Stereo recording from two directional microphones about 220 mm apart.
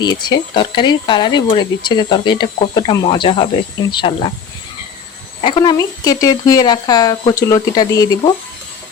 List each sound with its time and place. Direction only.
0.0 s speech: 20° left (ahead or behind)
5.4 s a child's voice: 20° left (ahead or behind)